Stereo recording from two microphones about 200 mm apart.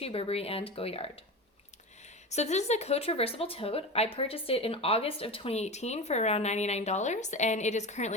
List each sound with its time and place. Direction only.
0.0 s speech: 30° left (ahead or behind)
2.3 s speech: 35° left (ahead or behind)